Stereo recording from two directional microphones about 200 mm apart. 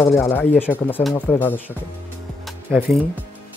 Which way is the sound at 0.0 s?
5° left (ahead or behind).